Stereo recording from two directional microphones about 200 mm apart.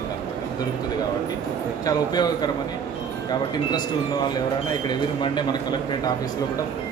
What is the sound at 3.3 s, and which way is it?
Speech, 20° left (ahead or behind).